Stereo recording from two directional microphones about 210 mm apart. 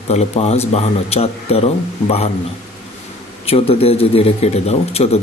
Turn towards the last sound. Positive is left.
turn(degrees=30)  # may be behind; listen again after turning